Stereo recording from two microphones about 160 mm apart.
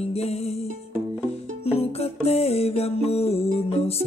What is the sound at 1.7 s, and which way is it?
Music, 40° left (ahead or behind).